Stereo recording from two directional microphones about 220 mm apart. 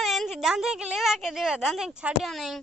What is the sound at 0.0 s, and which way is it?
A woman's voice, centre (ahead or behind).